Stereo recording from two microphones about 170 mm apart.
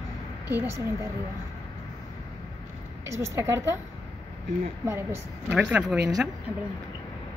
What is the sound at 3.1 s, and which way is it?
Speech, 15° right (ahead or behind).